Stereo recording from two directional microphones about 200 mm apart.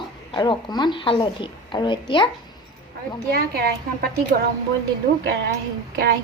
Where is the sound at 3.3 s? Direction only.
50° right (ahead or behind).